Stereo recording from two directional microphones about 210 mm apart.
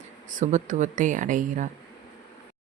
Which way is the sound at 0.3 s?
35° right (ahead or behind).